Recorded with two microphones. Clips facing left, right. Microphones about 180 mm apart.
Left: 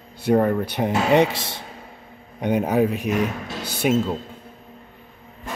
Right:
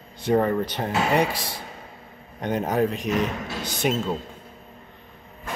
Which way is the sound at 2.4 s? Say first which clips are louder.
Left 3 dB; 10° left (ahead or behind).